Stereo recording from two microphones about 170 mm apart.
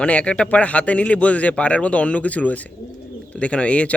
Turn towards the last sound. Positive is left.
turn(degrees=5)  # may be behind; listen again after turning